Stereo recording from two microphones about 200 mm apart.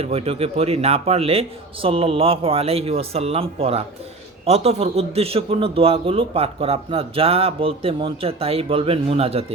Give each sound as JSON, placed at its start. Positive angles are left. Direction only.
{"t": 0.0, "sound": "speech", "side_deg": -30}